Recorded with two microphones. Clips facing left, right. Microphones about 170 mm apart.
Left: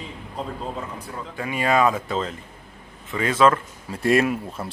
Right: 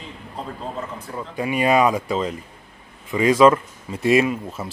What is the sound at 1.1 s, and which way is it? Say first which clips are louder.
Speech: right 6 dB; 15° right (ahead or behind).